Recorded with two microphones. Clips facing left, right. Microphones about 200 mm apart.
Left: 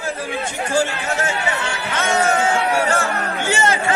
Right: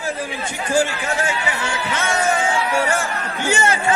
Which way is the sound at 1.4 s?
60° left (ahead or behind).